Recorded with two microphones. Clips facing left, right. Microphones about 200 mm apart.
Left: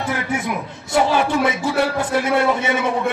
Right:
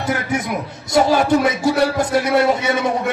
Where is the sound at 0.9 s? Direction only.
40° right (ahead or behind).